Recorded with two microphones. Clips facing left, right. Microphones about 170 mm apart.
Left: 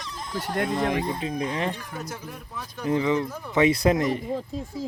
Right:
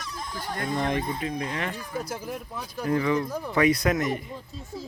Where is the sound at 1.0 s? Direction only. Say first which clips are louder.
Left 2 dB; 20° left (ahead or behind).